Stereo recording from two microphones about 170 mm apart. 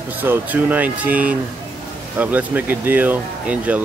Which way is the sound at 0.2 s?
10° right (ahead or behind).